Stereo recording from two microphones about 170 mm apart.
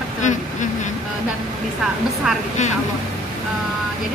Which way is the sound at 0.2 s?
45° left (ahead or behind).